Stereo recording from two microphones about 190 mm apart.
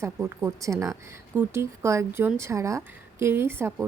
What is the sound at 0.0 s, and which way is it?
A woman's voice, 10° right (ahead or behind).